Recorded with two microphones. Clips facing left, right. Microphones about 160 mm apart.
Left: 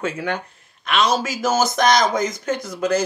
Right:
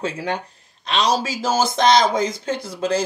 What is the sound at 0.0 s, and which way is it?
Speech, 30° right (ahead or behind).